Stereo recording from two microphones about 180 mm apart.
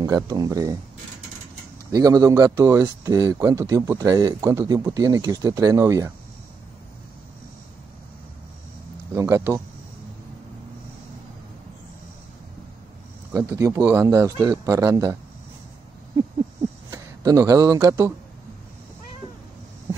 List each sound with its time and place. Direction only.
0.0 s speech: 20° right (ahead or behind)
1.9 s speech: 20° right (ahead or behind)
9.1 s speech: 15° right (ahead or behind)
13.3 s speech: 15° right (ahead or behind)
16.9 s speech: 20° right (ahead or behind)